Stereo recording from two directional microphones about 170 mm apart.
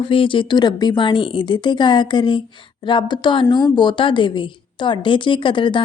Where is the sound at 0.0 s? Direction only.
30° left (ahead or behind).